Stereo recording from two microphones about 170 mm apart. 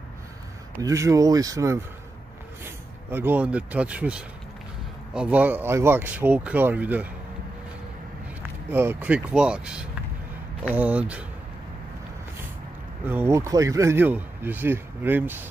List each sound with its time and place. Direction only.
0.8 s speech: 20° right (ahead or behind)
8.4 s speech: 10° right (ahead or behind)
13.0 s speech: 10° right (ahead or behind)